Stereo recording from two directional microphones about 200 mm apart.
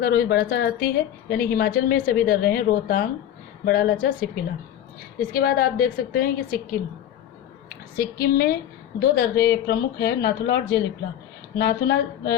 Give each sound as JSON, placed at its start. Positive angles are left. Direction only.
{"t": 0.0, "sound": "a woman's voice", "side_deg": 50}
{"t": 7.9, "sound": "a woman's voice", "side_deg": 50}